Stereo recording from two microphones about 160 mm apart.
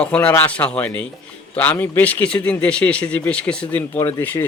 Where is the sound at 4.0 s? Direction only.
20° left (ahead or behind).